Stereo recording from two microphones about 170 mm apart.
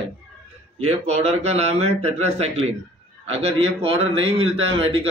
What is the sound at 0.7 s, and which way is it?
A man's voice, 40° right (ahead or behind).